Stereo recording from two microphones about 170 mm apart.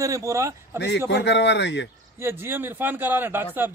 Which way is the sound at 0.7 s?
85° left.